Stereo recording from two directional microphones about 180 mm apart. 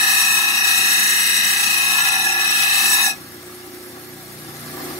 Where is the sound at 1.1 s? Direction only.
15° left (ahead or behind).